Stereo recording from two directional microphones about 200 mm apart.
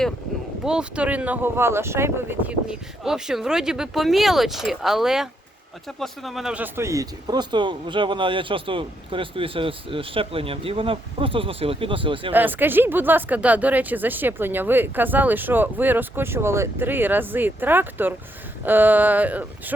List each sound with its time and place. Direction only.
0.6 s speech: 5° right (ahead or behind); by 12.3 s 25° right (ahead or behind)
12.3 s speech: 10° right (ahead or behind)